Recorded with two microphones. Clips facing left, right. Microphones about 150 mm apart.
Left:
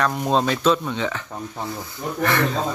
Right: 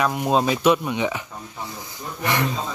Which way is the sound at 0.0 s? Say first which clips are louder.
Even; 5° right (ahead or behind).